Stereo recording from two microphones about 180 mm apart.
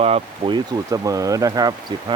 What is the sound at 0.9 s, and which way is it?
Speech, 20° right (ahead or behind).